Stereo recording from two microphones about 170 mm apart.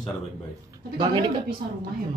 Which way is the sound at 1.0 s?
30° right (ahead or behind).